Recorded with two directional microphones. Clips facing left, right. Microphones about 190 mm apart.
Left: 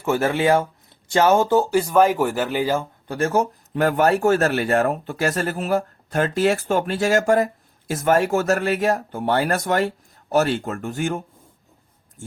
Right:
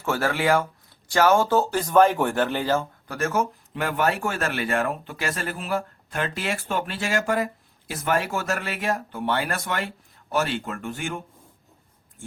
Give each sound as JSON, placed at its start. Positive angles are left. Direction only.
{"t": 0.0, "sound": "speech", "side_deg": 20}
{"t": 3.1, "sound": "speech", "side_deg": 30}